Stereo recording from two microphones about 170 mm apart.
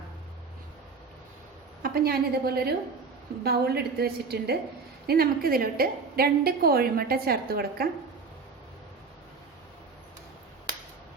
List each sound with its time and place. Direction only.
1.8 s a woman's voice: 60° right (ahead or behind)